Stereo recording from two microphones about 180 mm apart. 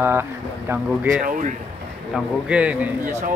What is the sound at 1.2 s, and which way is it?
Speech, 45° right (ahead or behind).